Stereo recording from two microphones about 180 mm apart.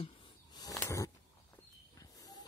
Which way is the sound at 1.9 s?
20° left (ahead or behind).